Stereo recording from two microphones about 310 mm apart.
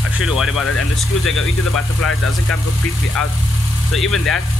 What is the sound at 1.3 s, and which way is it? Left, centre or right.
Speech, left.